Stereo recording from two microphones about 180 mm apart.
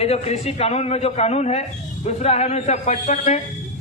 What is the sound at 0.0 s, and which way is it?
A man's voice, 35° left (ahead or behind).